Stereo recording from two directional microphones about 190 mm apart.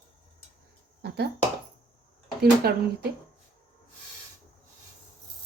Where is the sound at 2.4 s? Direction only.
55° right (ahead or behind).